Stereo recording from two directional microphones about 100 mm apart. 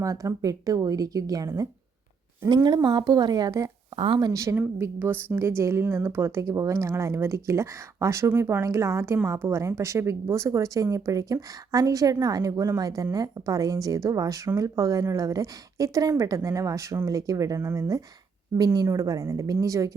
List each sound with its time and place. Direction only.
0.0 s speech: 35° right (ahead or behind)
2.6 s a woman's voice: 45° right (ahead or behind)
3.9 s speech: 60° right (ahead or behind)
4.2 s speech: 35° right (ahead or behind)
4.5 s a woman's voice: 20° right (ahead or behind)